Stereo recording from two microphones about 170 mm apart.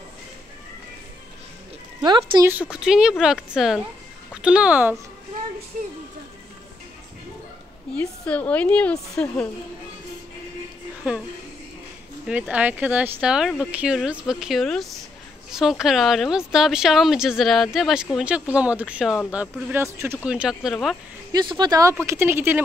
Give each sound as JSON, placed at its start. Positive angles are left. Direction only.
{"t": 2.0, "sound": "speech", "side_deg": -25}
{"t": 2.4, "sound": "a woman's voice", "side_deg": -10}
{"t": 7.9, "sound": "a woman's voice", "side_deg": 5}
{"t": 12.3, "sound": "a woman's voice", "side_deg": -10}
{"t": 21.3, "sound": "speech", "side_deg": -25}